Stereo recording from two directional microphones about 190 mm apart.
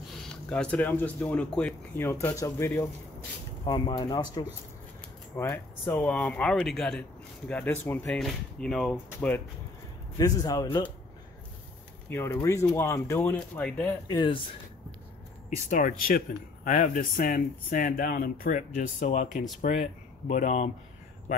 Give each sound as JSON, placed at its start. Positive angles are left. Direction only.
{"t": 0.3, "sound": "speech", "side_deg": 5}
{"t": 10.1, "sound": "speech", "side_deg": 20}
{"t": 12.1, "sound": "speech", "side_deg": 10}
{"t": 14.0, "sound": "speech", "side_deg": 25}
{"t": 15.5, "sound": "speech", "side_deg": 45}
{"t": 20.2, "sound": "speech", "side_deg": 40}